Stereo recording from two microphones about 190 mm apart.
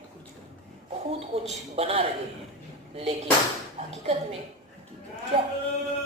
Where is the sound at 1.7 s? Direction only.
30° right (ahead or behind).